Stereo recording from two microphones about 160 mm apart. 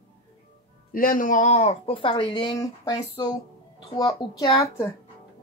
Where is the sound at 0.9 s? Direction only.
60° left (ahead or behind); by 4.8 s 25° left (ahead or behind).